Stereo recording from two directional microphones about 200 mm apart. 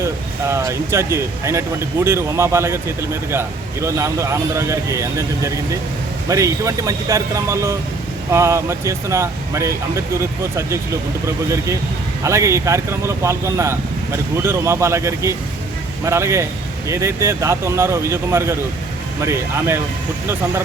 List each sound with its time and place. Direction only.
0.0 s speech: 15° right (ahead or behind)